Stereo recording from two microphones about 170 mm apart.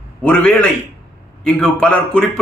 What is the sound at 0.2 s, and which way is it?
A man's voice, 10° left (ahead or behind).